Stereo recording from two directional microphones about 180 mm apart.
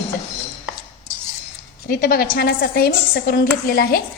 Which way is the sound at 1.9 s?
50° left (ahead or behind).